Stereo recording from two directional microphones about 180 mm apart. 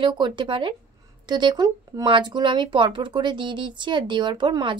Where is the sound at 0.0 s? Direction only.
25° right (ahead or behind).